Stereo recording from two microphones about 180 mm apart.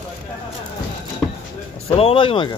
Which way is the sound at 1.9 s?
30° left (ahead or behind).